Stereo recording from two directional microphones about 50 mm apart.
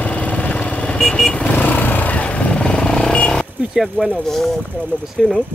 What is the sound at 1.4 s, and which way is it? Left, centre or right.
Vehicle, left.